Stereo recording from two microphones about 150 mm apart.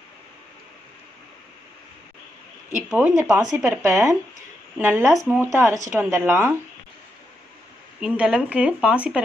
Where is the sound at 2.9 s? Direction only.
5° right (ahead or behind).